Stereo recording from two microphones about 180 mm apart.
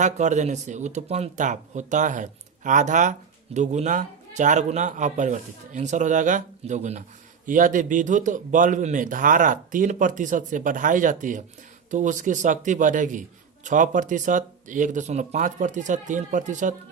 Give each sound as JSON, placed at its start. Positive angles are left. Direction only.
{"t": 0.0, "sound": "a man's voice", "side_deg": -40}